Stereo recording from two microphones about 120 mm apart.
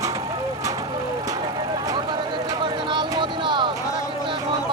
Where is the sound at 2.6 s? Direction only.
40° right (ahead or behind).